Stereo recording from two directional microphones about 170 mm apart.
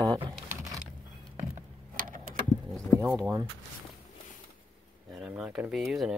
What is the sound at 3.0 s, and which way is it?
Speech, 15° right (ahead or behind).